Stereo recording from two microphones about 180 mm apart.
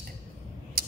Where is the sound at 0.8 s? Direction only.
55° right (ahead or behind).